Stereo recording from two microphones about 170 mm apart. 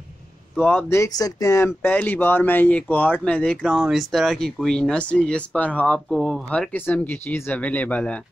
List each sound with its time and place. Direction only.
0.6 s speech: 10° left (ahead or behind)